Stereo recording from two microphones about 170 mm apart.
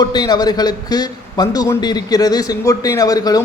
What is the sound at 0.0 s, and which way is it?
A man's voice, 25° left (ahead or behind).